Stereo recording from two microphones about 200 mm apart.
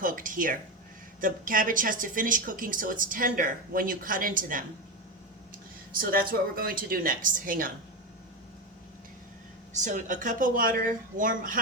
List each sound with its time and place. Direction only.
0.0 s a sound: 40° right (ahead or behind)
1.2 s speech: 45° right (ahead or behind)
6.0 s speech: 45° right (ahead or behind)
9.7 s speech: 40° right (ahead or behind)